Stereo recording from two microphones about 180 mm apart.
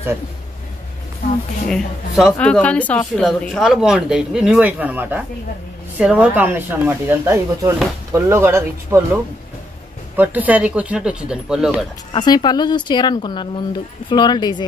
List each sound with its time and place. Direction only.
1.7 s a woman's voice: centre (ahead or behind)
12.1 s speech: 25° left (ahead or behind)